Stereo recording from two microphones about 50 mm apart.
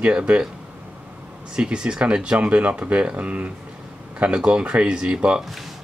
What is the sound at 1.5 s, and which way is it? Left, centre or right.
Speech, centre.